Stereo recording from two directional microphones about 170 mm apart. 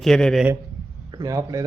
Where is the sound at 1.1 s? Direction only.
20° right (ahead or behind).